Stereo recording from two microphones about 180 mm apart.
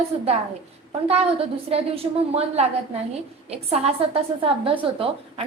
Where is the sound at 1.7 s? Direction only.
35° right (ahead or behind).